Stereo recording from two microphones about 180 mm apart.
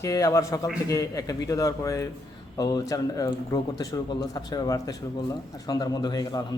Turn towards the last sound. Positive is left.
turn(degrees=20)  # may be behind; listen again after turning